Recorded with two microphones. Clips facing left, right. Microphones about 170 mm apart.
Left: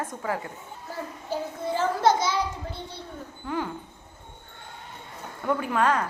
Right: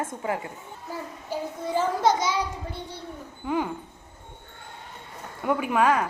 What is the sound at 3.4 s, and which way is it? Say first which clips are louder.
Speech: right 4 dB; 15° right (ahead or behind).